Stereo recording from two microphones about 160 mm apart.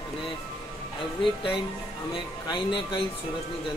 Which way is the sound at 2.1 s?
30° left (ahead or behind).